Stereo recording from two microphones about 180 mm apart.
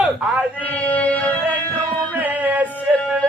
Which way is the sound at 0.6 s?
10° left (ahead or behind).